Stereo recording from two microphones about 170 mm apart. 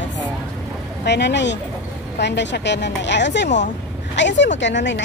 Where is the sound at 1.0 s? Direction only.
85° left.